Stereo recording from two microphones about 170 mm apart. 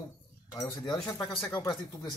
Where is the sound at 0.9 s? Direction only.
20° left (ahead or behind).